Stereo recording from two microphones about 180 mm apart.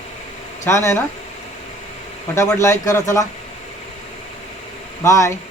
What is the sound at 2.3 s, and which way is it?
Speech, 15° left (ahead or behind).